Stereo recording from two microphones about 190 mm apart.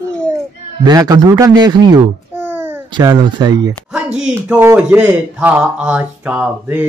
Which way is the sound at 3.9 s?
5° right (ahead or behind).